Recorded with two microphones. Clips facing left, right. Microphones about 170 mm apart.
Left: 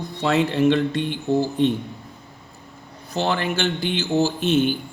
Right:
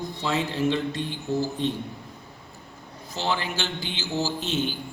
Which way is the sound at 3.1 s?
55° left (ahead or behind).